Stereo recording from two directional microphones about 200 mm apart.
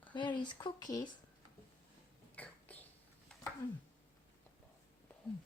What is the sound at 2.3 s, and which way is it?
Whispering, 10° left (ahead or behind).